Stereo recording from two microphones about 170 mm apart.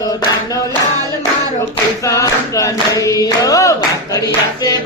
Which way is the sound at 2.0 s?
20° left (ahead or behind).